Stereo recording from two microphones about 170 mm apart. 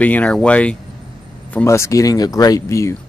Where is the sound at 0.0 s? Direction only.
10° left (ahead or behind).